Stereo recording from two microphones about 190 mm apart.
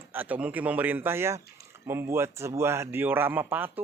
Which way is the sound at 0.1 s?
10° right (ahead or behind).